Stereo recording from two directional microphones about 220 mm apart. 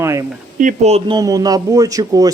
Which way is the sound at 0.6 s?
35° right (ahead or behind).